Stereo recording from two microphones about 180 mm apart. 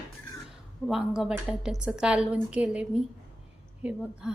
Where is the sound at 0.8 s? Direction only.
5° left (ahead or behind).